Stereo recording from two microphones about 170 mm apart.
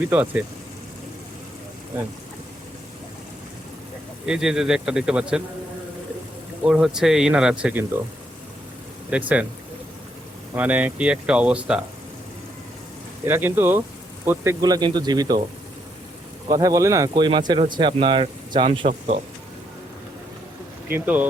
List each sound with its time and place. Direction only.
0.1 s speech: 10° right (ahead or behind)
4.3 s speech: 5° right (ahead or behind)
6.7 s speech: 5° right (ahead or behind)
9.0 s speech: 5° right (ahead or behind)
10.5 s speech: 10° right (ahead or behind)
13.2 s speech: 15° right (ahead or behind)
16.5 s speech: 20° right (ahead or behind)
18.9 s speech: 40° right (ahead or behind)
20.9 s speech: 10° right (ahead or behind)